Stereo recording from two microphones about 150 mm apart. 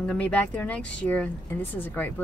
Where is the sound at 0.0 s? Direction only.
5° left (ahead or behind).